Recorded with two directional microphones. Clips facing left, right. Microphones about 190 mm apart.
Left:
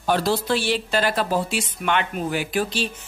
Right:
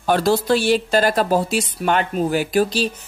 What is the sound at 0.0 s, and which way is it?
A woman's voice, 50° right (ahead or behind).